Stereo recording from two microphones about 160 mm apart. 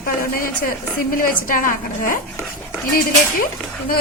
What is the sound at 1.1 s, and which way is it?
A woman's voice, 60° left (ahead or behind).